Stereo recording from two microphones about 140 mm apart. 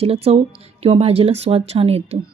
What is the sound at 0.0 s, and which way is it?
Speech, 45° right (ahead or behind).